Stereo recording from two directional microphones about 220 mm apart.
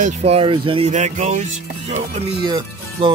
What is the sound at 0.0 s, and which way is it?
Speech, 30° right (ahead or behind).